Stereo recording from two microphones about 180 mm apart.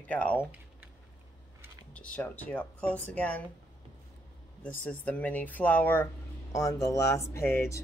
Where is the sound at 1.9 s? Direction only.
5° left (ahead or behind).